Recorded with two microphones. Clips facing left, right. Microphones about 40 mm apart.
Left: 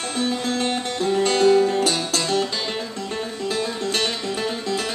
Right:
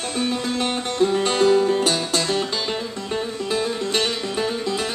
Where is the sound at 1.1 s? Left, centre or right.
Centre.